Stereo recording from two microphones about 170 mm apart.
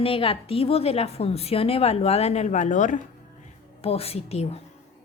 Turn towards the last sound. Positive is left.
turn(degrees=35)  # may be behind; listen again after turning